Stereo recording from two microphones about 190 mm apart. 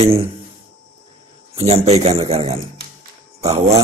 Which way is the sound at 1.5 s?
30° right (ahead or behind).